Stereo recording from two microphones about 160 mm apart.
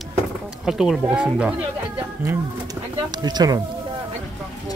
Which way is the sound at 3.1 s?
25° right (ahead or behind).